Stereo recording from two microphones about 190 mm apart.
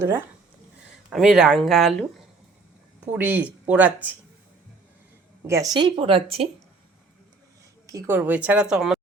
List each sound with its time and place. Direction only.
0.0 s speech: 10° right (ahead or behind)
3.1 s speech: 10° right (ahead or behind)
5.5 s a woman's voice: 20° right (ahead or behind)
7.9 s speech: 15° right (ahead or behind)